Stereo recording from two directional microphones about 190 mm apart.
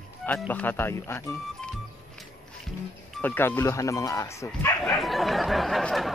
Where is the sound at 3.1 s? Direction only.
10° left (ahead or behind).